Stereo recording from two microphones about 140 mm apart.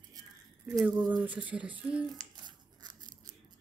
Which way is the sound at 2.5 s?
30° right (ahead or behind).